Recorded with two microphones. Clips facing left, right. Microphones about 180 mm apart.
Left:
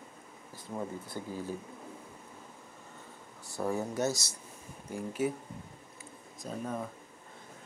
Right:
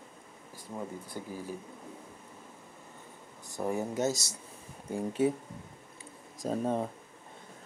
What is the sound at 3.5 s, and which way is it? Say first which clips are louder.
Speech: right 1 dB; 20° right (ahead or behind).